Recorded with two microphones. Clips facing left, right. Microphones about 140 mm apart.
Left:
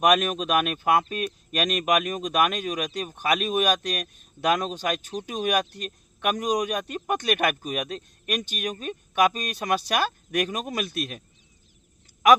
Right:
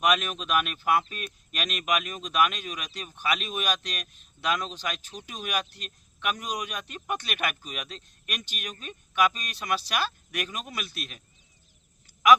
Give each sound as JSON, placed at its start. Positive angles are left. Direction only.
{"t": 0.0, "sound": "speech", "side_deg": 45}